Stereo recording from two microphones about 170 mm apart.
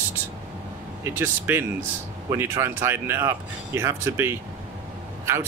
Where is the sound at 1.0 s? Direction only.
15° right (ahead or behind).